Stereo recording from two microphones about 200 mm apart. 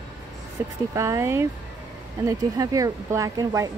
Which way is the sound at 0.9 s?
15° right (ahead or behind).